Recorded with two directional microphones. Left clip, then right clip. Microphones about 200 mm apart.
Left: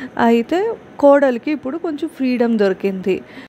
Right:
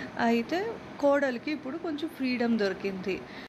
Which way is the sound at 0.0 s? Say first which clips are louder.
Left 12 dB; 55° left (ahead or behind).